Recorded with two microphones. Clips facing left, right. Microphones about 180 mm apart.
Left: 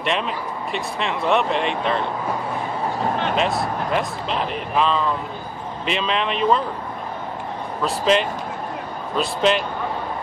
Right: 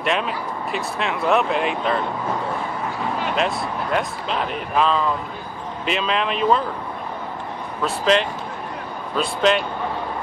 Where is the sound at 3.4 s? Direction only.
Centre (ahead or behind).